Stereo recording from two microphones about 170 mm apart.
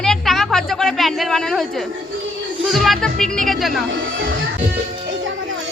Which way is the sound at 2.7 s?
Centre (ahead or behind).